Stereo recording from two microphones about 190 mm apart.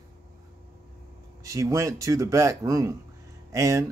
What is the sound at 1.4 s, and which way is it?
Speech, 15° right (ahead or behind).